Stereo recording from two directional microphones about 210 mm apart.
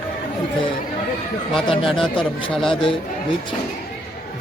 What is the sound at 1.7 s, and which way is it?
Speech, 25° left (ahead or behind).